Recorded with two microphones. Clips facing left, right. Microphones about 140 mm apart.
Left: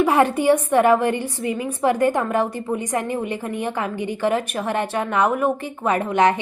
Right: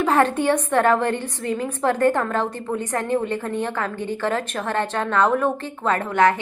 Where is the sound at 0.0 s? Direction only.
10° left (ahead or behind).